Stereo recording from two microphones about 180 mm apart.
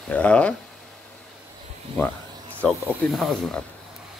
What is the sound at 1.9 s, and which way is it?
Speech, 30° right (ahead or behind).